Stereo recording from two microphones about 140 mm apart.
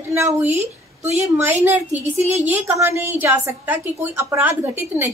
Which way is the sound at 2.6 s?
15° right (ahead or behind).